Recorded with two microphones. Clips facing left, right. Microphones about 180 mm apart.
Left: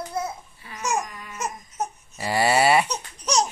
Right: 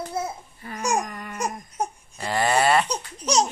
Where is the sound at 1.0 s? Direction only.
55° right (ahead or behind).